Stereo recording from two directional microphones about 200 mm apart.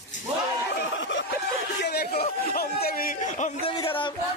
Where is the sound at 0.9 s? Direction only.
65° left (ahead or behind).